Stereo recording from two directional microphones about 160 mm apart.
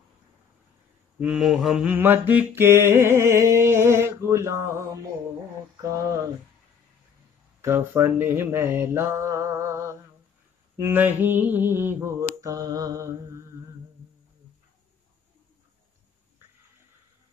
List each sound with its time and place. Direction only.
1.2 s mantra: 5° right (ahead or behind)
7.6 s mantra: 15° right (ahead or behind)